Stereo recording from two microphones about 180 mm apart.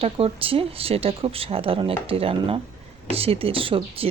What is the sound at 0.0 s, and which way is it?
Speech, 30° right (ahead or behind).